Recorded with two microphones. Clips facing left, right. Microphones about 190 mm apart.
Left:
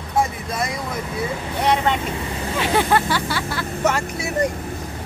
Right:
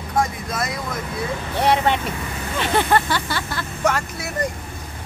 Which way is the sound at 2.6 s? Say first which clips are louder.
Even; 5° left (ahead or behind).